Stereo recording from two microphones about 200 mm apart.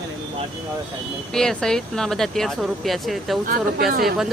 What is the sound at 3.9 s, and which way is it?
Speech, 45° right (ahead or behind).